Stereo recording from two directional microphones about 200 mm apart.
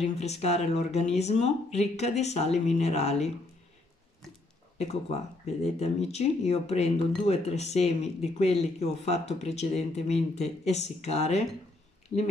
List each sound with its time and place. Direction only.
0.0 s speech: 30° left (ahead or behind)
5.8 s speech: 30° left (ahead or behind)